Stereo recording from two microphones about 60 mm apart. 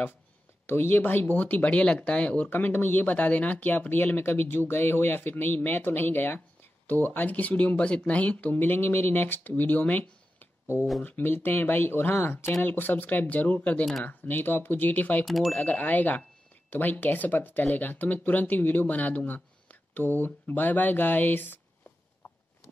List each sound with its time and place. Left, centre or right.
0.7 s speech: left
2.5 s speech: left
15.2 s speech: centre
15.5 s speech: left